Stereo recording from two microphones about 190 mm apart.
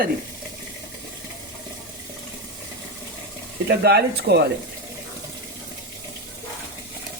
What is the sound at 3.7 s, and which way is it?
Speech, 60° right (ahead or behind).